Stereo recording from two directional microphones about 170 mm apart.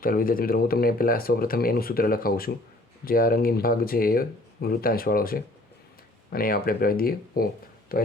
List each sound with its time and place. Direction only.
0.0 s speech: 55° left (ahead or behind)